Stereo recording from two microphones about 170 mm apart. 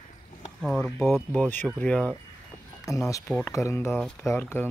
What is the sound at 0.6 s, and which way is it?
Speech, centre (ahead or behind).